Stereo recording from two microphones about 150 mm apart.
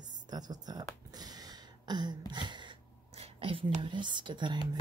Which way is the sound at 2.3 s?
30° right (ahead or behind).